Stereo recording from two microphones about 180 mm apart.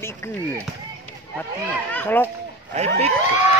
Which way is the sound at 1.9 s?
10° left (ahead or behind).